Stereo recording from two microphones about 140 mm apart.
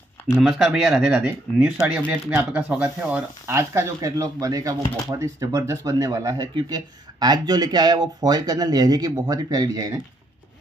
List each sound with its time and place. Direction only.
0.4 s speech: 5° right (ahead or behind)
1.1 s speech: 15° right (ahead or behind)